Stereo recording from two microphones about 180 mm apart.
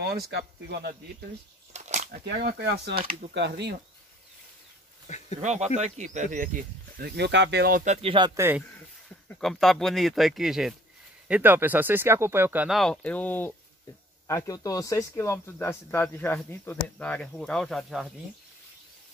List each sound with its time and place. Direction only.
0.0 s speech: 65° right (ahead or behind)
1.7 s a sound: 40° right (ahead or behind)
2.2 s speech: 60° right (ahead or behind)
5.1 s speech: 40° left (ahead or behind)
5.4 s speech: 40° right (ahead or behind)
7.1 s speech: 70° right (ahead or behind); by 8.3 s 30° right (ahead or behind)
8.4 s speech: 10° right (ahead or behind)
9.3 s speech: centre (ahead or behind)